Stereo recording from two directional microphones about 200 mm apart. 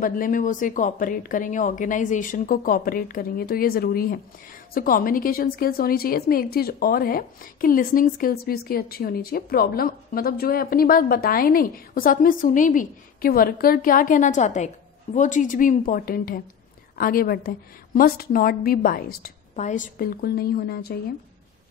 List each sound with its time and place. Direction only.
0.0 s a woman's voice: 45° left (ahead or behind)